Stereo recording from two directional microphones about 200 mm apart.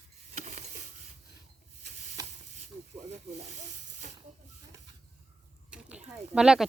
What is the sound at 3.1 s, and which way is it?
Speech, 35° right (ahead or behind).